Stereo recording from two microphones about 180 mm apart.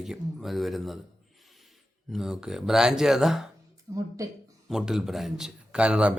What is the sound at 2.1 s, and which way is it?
A man's voice, centre (ahead or behind).